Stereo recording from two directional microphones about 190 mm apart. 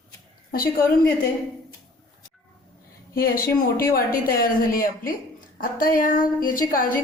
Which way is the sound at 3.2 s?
50° left (ahead or behind).